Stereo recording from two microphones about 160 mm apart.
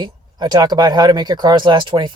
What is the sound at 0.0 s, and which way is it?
Speech, 25° right (ahead or behind).